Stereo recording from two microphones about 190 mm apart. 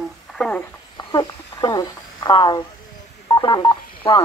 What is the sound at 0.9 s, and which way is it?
Speech, 20° left (ahead or behind).